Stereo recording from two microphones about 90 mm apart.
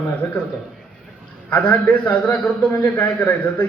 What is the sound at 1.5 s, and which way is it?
A man's voice, 20° left (ahead or behind).